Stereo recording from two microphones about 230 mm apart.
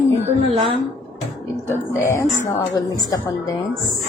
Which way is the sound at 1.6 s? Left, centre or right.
Centre.